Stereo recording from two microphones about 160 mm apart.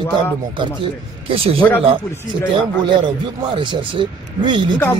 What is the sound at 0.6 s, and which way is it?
Speech, 35° right (ahead or behind).